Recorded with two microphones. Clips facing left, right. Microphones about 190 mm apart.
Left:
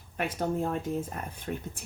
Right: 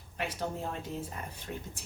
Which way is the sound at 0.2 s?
50° left (ahead or behind).